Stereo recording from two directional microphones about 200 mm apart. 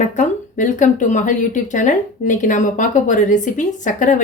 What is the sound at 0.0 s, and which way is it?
Speech, 40° left (ahead or behind).